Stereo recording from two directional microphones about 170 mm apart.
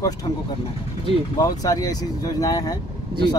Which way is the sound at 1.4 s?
20° left (ahead or behind).